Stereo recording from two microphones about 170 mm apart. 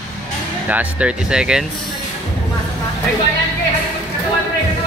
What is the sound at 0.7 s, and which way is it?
Speech, 10° right (ahead or behind).